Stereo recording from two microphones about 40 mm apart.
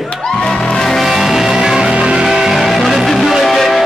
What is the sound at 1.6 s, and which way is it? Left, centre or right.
Music, centre.